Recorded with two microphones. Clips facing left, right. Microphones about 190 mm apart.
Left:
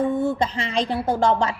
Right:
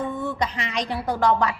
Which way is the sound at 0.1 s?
30° left (ahead or behind).